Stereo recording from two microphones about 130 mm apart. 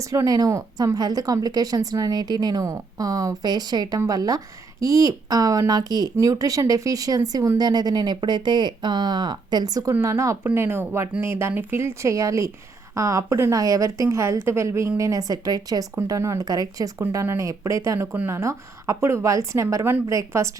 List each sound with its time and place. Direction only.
0.0 s a woman's voice: 25° right (ahead or behind)